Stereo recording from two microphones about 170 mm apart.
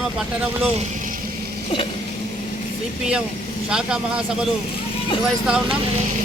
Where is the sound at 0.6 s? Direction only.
35° right (ahead or behind).